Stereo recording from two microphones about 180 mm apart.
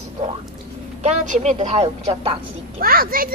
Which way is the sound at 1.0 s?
40° right (ahead or behind).